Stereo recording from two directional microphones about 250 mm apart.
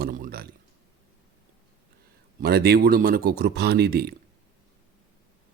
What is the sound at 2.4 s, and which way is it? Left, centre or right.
Speech, right.